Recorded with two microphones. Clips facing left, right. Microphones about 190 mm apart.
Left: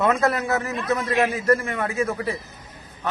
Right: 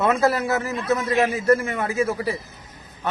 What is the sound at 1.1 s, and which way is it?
Speech, 20° right (ahead or behind).